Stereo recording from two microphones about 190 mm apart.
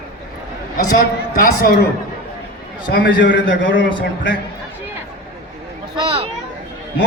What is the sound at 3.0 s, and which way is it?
Speech, 70° left (ahead or behind).